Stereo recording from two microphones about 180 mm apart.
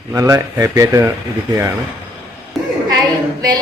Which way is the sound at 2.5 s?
Centre (ahead or behind).